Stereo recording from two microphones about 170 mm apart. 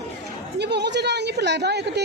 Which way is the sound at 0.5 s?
85° right.